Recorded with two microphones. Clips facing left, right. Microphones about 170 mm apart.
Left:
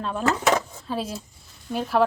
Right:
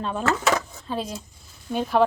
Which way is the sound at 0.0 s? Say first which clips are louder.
Left 1 dB; centre (ahead or behind).